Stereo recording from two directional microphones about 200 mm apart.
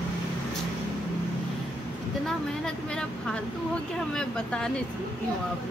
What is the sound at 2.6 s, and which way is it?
Speech, 5° left (ahead or behind).